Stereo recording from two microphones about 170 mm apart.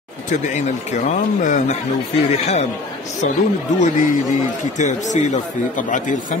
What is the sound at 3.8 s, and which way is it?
A man's voice, 45° left (ahead or behind).